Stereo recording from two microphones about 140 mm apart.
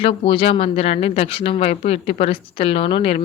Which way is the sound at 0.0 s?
40° left (ahead or behind).